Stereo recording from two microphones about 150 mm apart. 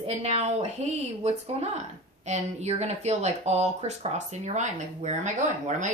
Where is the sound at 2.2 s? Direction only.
50° right (ahead or behind).